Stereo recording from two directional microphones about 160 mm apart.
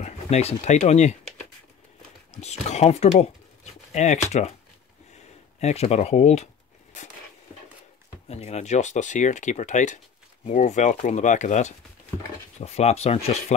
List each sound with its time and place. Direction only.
0.0 s speech: 40° left (ahead or behind)
2.4 s speech: 40° left (ahead or behind)
5.6 s speech: 40° left (ahead or behind)
8.3 s speech: 40° left (ahead or behind)